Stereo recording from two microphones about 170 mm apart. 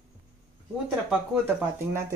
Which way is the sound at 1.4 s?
15° right (ahead or behind).